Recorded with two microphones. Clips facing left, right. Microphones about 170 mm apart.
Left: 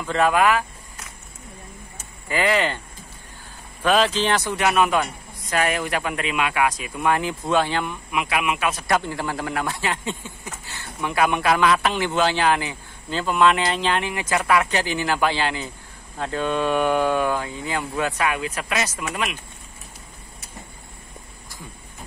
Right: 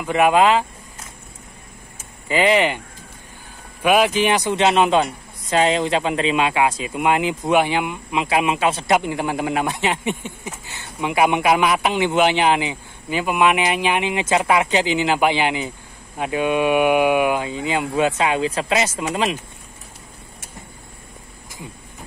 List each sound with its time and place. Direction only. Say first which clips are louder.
0.0 s speech: right 4 dB; 15° right (ahead or behind)
2.2 s speech: right 4 dB; 20° right (ahead or behind)
3.8 s speech: right 3 dB; 15° right (ahead or behind)
8.1 s a man's voice: right 5 dB; 25° right (ahead or behind)